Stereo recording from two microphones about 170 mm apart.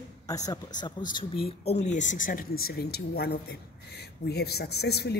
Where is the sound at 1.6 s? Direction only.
40° left (ahead or behind).